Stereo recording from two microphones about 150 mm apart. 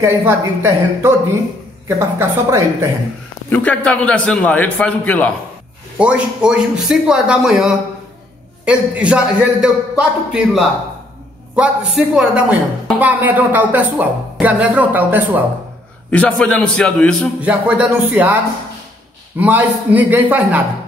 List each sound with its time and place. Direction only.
0.0 s a woman's voice: 15° right (ahead or behind)
3.4 s a man's voice: 10° left (ahead or behind)
5.9 s a man's voice: 5° right (ahead or behind)
16.1 s a man's voice: 5° left (ahead or behind)
17.4 s a woman's voice: 10° right (ahead or behind)
19.4 s a woman's voice: 10° right (ahead or behind)